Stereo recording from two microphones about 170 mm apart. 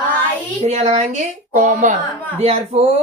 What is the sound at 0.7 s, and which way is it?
Speech, 40° right (ahead or behind).